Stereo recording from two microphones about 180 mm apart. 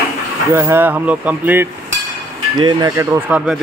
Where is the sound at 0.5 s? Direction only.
15° right (ahead or behind).